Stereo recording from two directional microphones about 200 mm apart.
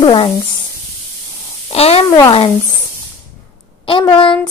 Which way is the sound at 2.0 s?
15° left (ahead or behind).